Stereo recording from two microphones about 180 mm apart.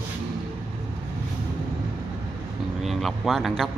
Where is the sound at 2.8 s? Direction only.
Centre (ahead or behind).